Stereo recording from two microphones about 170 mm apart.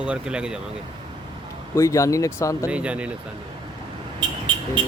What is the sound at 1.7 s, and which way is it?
Speech, 20° left (ahead or behind).